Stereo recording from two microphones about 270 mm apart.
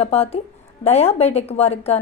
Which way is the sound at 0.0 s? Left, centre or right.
Left.